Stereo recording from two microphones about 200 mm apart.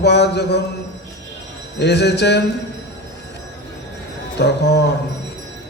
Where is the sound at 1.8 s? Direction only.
60° left (ahead or behind).